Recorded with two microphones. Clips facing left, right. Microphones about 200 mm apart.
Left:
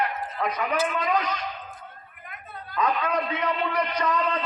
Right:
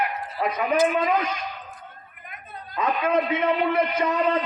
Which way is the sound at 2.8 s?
25° right (ahead or behind).